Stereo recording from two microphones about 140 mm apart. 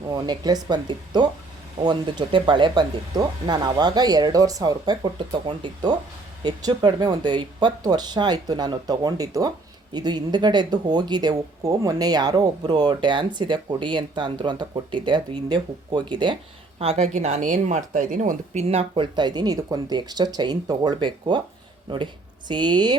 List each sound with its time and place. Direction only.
0.1 s speech: 30° right (ahead or behind)